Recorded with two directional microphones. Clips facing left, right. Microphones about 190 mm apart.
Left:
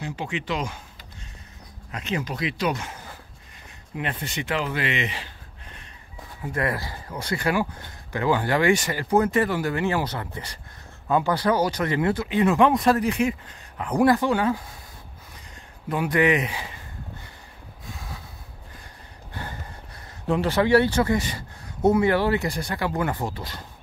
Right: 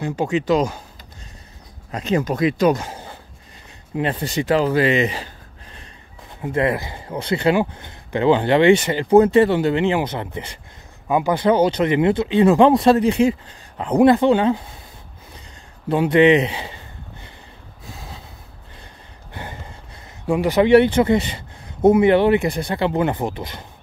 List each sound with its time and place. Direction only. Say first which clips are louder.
0.0 s speech: right 9 dB; 45° right (ahead or behind)
1.9 s speech: right 8 dB; 35° right (ahead or behind)
6.4 s speech: right 7 dB; 20° right (ahead or behind)
15.9 s a sound: right 8 dB; 25° right (ahead or behind)
20.2 s speech: right 6 dB; 15° right (ahead or behind)